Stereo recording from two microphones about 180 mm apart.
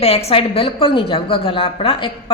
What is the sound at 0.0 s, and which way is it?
A woman's voice, 35° left (ahead or behind).